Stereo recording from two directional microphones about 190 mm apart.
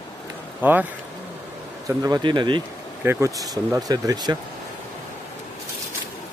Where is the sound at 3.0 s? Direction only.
15° right (ahead or behind).